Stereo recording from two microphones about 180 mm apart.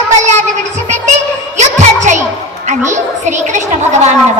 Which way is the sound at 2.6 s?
45° right (ahead or behind).